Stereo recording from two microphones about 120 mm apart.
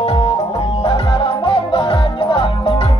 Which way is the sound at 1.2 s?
50° left (ahead or behind).